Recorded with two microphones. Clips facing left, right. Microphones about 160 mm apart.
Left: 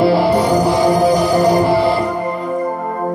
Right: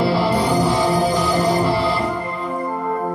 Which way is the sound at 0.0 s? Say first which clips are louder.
Left 5 dB; 45° left (ahead or behind).